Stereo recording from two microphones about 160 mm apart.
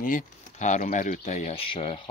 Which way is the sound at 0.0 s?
50° left (ahead or behind).